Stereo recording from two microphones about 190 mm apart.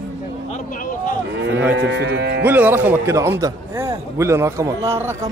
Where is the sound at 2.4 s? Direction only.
10° right (ahead or behind).